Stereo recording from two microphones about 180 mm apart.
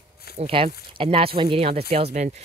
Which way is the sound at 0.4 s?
30° right (ahead or behind).